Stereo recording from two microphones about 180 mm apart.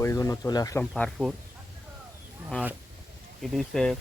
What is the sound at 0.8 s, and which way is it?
Speech, 5° left (ahead or behind).